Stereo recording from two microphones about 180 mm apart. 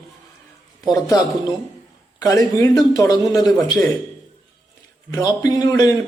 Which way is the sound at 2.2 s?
20° left (ahead or behind).